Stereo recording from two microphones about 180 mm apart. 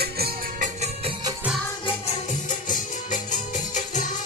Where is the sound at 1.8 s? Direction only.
40° left (ahead or behind).